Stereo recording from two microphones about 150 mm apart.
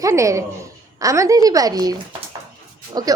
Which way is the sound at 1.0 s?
20° right (ahead or behind).